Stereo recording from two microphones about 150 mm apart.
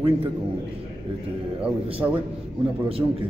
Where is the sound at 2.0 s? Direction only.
25° right (ahead or behind).